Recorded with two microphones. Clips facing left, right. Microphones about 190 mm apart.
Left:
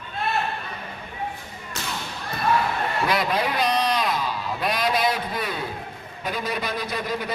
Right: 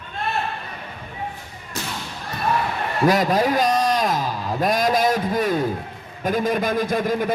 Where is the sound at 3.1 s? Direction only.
45° right (ahead or behind).